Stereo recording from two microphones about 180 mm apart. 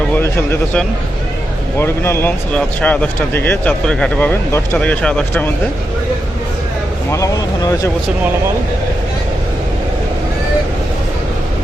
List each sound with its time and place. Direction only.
0.1 s speech: 10° left (ahead or behind)
7.1 s speech: 20° left (ahead or behind)